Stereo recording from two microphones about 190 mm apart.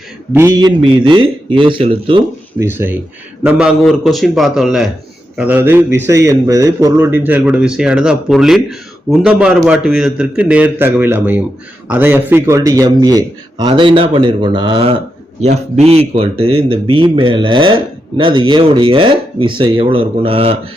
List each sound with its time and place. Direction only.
0.3 s a man's voice: 15° right (ahead or behind)
2.6 s a man's voice: 10° right (ahead or behind)
15.4 s a man's voice: 35° right (ahead or behind)